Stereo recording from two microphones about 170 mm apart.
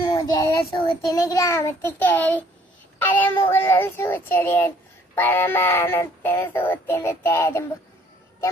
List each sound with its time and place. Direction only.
0.1 s a child's voice: 20° left (ahead or behind)
3.0 s child singing: 10° left (ahead or behind)